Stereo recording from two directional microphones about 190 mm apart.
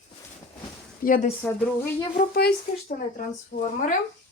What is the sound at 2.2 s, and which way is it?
Speech, 55° left (ahead or behind).